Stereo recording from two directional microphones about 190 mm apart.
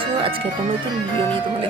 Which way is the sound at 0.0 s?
30° right (ahead or behind).